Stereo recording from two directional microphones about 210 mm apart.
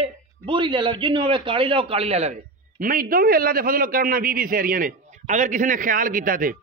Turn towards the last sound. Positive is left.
turn(degrees=-40)  # may be behind; listen again after turning